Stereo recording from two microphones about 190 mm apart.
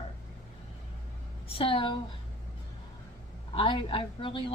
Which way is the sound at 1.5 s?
30° left (ahead or behind).